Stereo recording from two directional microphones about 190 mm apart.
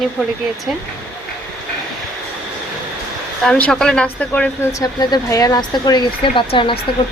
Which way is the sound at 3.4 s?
5° left (ahead or behind).